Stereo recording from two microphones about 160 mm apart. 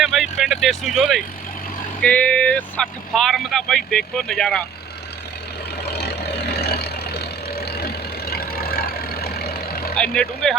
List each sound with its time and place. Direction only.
0.0 s vehicle: centre (ahead or behind)
2.0 s speech: 10° left (ahead or behind)
5.8 s vehicle: 90° left
9.9 s speech: 5° left (ahead or behind)